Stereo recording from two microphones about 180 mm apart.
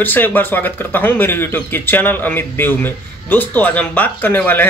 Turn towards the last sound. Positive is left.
turn(degrees=10)  # may be behind; listen again after turning